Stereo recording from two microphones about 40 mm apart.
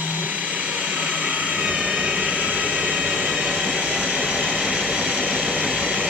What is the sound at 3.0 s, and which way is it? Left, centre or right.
Vehicle, right.